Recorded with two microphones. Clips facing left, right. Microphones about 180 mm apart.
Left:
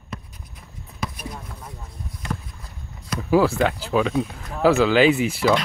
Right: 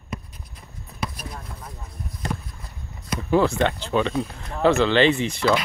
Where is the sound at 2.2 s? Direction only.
40° right (ahead or behind).